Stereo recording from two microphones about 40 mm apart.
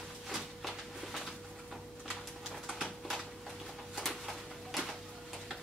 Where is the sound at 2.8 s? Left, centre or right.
Centre.